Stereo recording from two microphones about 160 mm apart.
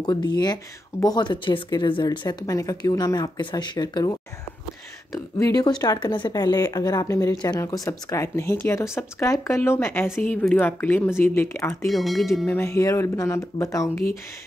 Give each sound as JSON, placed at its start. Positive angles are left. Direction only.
{"t": 0.0, "sound": "speech", "side_deg": 25}
{"t": 11.8, "sound": "speech", "side_deg": 0}
{"t": 12.4, "sound": "speech", "side_deg": 15}